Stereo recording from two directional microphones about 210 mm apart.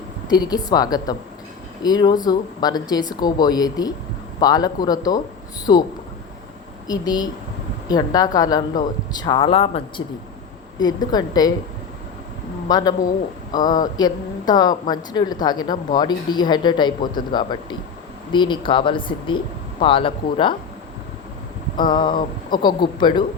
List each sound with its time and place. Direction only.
0.3 s a woman's voice: 20° left (ahead or behind)
6.8 s a woman's voice: 20° left (ahead or behind)
12.6 s a man's voice: 20° left (ahead or behind)
21.8 s a woman's voice: 20° left (ahead or behind)
22.1 s speech: 40° left (ahead or behind)
22.6 s a woman's voice: 20° left (ahead or behind)